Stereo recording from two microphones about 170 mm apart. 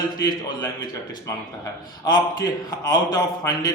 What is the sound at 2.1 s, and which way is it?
Speech, 20° left (ahead or behind).